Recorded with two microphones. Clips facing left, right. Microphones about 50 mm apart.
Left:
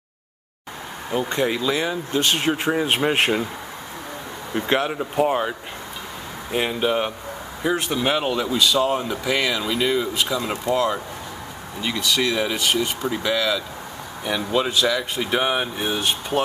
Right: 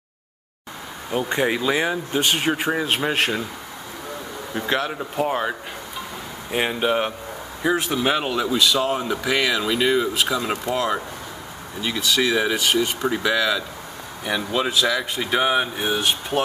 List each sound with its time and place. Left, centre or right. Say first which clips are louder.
1.3 s speech: right 2 dB; centre
2.2 s speech: even; centre
2.8 s a man's voice: left 2 dB; centre
4.6 s a man's voice: left 2 dB; centre
4.9 s speech: left 3 dB; centre
6.5 s speech: even; centre